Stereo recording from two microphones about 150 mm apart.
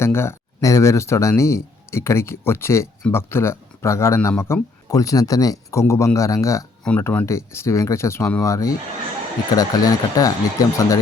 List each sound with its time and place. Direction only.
0.0 s speech: 15° left (ahead or behind)
6.8 s speech: 10° left (ahead or behind)